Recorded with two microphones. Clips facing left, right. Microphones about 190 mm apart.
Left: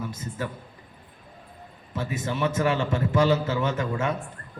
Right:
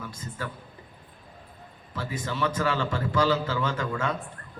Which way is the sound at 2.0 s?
20° left (ahead or behind).